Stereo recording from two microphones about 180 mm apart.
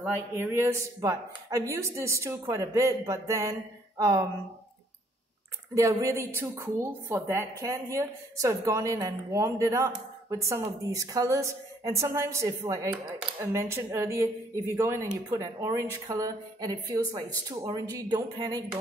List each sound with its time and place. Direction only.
0.3 s a woman's voice: 15° right (ahead or behind)
5.8 s a woman's voice: 20° right (ahead or behind)